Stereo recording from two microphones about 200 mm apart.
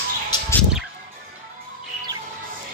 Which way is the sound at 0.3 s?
10° left (ahead or behind).